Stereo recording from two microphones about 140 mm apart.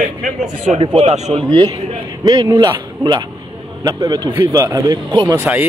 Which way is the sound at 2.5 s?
20° right (ahead or behind).